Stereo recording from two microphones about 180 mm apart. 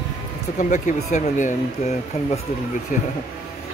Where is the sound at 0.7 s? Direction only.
40° left (ahead or behind).